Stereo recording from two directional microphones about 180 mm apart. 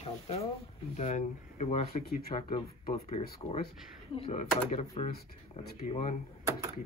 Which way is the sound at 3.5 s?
40° left (ahead or behind).